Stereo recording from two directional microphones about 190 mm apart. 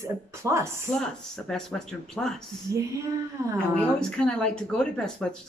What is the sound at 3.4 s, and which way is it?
Speech, 15° right (ahead or behind).